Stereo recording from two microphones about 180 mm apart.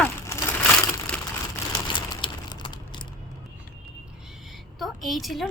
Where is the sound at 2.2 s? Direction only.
25° left (ahead or behind).